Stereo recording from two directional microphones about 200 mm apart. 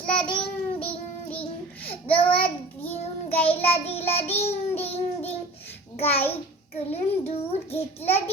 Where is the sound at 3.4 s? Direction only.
30° left (ahead or behind).